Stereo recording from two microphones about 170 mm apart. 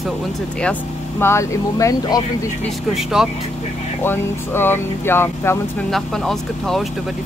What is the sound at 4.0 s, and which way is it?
Speech, 15° left (ahead or behind).